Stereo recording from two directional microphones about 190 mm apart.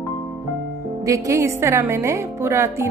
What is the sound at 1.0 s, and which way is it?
Speech, 15° right (ahead or behind).